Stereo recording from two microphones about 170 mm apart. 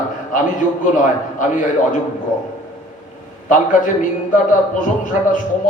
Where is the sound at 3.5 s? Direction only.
50° left (ahead or behind).